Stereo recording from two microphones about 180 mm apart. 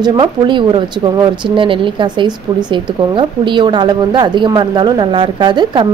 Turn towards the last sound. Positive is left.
turn(degrees=-25)  # may be behind; listen again after turning